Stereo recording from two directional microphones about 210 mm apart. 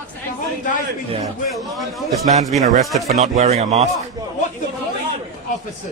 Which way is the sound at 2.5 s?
30° right (ahead or behind).